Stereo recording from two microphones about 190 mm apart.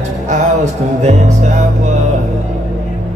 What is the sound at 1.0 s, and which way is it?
Music, 35° right (ahead or behind).